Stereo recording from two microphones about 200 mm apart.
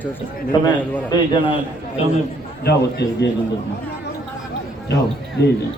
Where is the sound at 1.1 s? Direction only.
20° left (ahead or behind).